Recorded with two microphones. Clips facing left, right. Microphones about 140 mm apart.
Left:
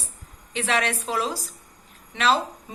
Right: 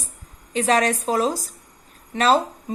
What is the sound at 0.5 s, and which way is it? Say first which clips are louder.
A woman's voice: right 6 dB; 40° right (ahead or behind).